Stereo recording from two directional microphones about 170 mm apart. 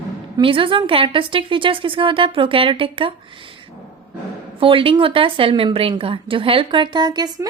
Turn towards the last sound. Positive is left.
turn(degrees=-25)  # may be behind; listen again after turning